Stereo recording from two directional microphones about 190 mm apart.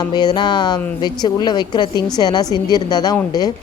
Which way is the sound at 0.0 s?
20° left (ahead or behind).